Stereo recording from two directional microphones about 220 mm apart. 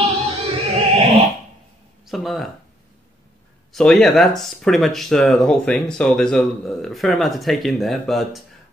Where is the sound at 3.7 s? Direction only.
Centre (ahead or behind).